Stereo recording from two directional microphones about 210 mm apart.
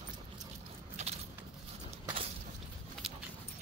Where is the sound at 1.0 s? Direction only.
30° right (ahead or behind).